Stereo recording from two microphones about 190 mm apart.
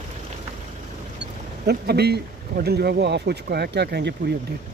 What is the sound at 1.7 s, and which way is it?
Speech, 60° right (ahead or behind).